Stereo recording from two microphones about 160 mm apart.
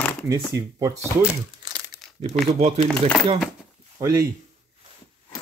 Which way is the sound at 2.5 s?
40° right (ahead or behind).